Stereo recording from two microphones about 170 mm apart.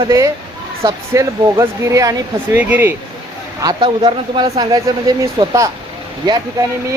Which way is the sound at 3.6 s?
20° right (ahead or behind).